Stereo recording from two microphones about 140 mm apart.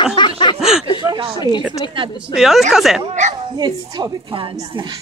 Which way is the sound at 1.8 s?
35° left (ahead or behind).